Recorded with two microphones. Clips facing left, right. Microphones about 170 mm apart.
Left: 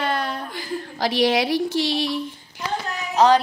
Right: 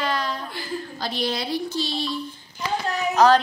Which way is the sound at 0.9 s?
90° left.